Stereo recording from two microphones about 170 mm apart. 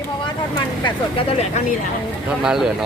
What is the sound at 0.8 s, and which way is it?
Speech, 35° left (ahead or behind).